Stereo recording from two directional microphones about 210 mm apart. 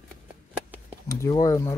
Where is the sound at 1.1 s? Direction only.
15° left (ahead or behind).